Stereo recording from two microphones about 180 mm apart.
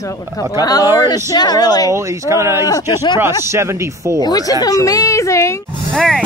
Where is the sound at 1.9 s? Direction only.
15° right (ahead or behind).